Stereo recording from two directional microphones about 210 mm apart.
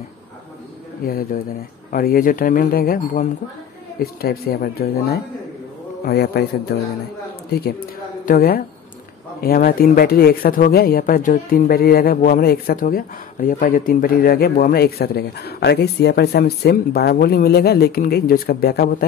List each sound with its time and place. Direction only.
1.0 s speech: 45° left (ahead or behind)
6.0 s speech: 50° left (ahead or behind)
8.3 s speech: 45° left (ahead or behind)